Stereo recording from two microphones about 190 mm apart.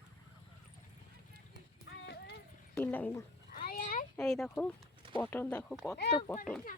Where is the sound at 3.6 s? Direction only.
45° left (ahead or behind).